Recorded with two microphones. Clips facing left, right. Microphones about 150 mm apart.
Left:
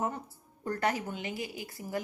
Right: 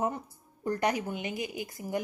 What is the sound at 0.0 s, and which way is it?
A woman's voice, 15° right (ahead or behind).